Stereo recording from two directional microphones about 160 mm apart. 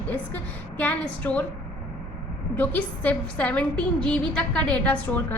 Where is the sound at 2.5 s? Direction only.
10° left (ahead or behind).